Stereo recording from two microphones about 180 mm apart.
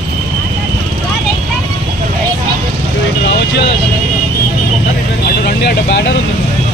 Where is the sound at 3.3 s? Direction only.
75° left (ahead or behind).